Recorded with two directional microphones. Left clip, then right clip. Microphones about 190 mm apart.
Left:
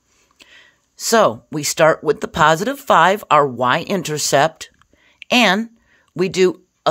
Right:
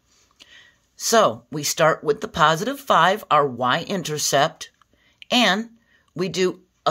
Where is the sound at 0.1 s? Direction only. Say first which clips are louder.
Left 2 dB; 30° left (ahead or behind).